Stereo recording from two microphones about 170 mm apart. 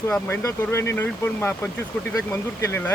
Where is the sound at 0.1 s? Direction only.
15° left (ahead or behind).